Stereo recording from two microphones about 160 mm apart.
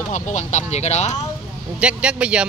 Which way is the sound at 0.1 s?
50° left (ahead or behind).